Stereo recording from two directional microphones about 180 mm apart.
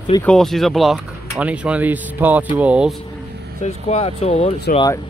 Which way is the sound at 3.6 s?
35° left (ahead or behind).